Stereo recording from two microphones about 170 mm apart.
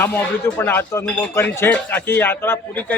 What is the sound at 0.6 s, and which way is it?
A man's voice, 10° left (ahead or behind).